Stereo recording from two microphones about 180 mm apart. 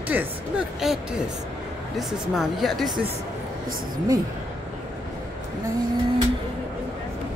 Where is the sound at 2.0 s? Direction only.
Centre (ahead or behind).